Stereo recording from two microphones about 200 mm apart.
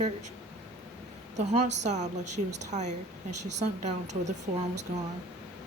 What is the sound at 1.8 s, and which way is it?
Speech, 35° right (ahead or behind).